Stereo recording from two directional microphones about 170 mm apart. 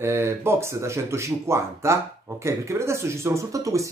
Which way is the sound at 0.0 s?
15° right (ahead or behind).